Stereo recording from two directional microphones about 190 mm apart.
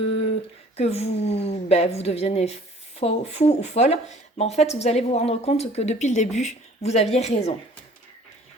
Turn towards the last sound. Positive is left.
turn(degrees=35)  # may be behind; listen again after turning